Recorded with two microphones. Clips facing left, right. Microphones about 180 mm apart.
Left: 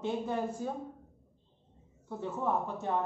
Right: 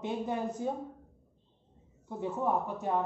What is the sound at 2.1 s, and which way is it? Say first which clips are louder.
Speech: right 2 dB; 15° right (ahead or behind).